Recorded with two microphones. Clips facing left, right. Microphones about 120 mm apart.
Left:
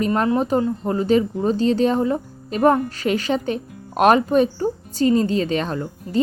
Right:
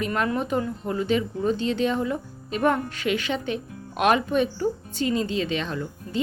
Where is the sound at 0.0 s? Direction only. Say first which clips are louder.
Left 6 dB; 35° left (ahead or behind).